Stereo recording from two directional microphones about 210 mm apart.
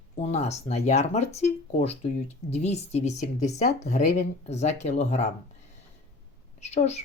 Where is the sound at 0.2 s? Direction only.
30° left (ahead or behind).